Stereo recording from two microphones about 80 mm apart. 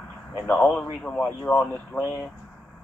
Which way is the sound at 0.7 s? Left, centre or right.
Left.